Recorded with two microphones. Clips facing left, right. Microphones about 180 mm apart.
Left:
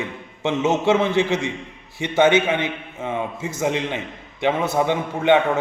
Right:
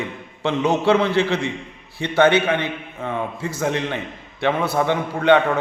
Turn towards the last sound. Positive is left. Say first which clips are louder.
# right 1 dB
turn(degrees=20)  # may be behind; listen again after turning